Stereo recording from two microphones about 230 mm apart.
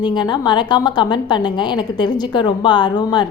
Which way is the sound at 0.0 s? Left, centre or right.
Centre.